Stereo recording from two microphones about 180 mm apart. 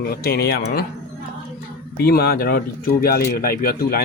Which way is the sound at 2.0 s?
60° left (ahead or behind).